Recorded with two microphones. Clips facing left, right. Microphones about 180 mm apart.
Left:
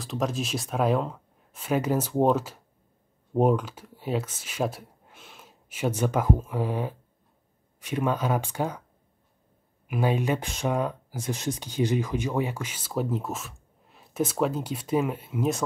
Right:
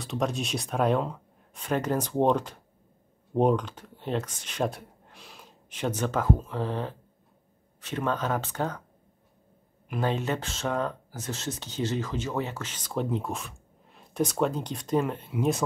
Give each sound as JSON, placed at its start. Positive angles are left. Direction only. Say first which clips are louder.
{"t": 0.0, "sound": "speech", "louder": "even", "side_deg": 0}
{"t": 9.8, "sound": "speech", "louder": "left 3 dB", "side_deg": 10}